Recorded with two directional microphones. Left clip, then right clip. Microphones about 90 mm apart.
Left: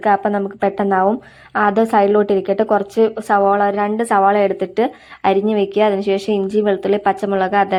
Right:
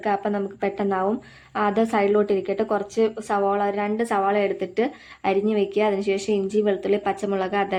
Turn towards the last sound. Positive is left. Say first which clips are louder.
# left 8 dB
turn(degrees=45)  # may be behind; listen again after turning